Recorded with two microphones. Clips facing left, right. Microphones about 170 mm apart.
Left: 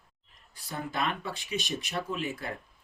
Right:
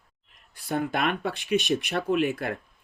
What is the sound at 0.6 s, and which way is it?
Speech, 60° right (ahead or behind).